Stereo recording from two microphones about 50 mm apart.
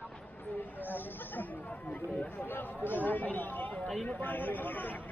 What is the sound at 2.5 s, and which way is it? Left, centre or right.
Run, left.